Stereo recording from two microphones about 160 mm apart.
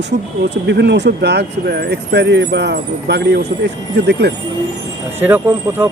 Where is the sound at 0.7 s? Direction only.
90° right.